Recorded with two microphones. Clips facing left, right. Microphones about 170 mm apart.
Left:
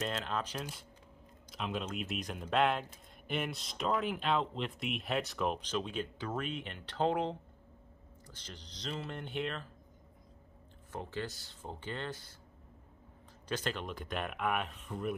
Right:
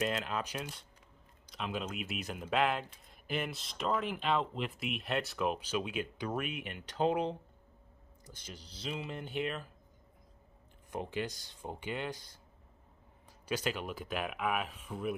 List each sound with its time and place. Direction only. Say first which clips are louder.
0.0 s speech: right 2 dB; 5° right (ahead or behind)
10.9 s speech: right 3 dB; 15° right (ahead or behind)
13.5 s speech: right 2 dB; 10° right (ahead or behind)